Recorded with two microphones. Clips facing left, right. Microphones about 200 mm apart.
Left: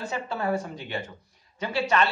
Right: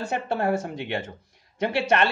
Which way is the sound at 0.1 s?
70° right (ahead or behind).